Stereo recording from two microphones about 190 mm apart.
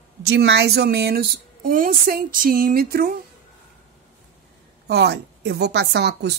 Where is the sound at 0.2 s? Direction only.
60° right (ahead or behind).